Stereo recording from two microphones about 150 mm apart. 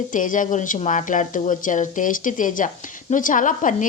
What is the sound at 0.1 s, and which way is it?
Speech, 60° left (ahead or behind).